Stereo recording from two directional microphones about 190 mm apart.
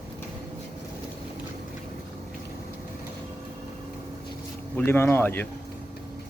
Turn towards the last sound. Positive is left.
turn(degrees=10)  # may be behind; listen again after turning